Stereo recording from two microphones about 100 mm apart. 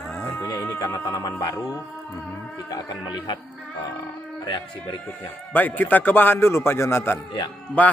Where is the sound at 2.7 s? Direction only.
45° left (ahead or behind).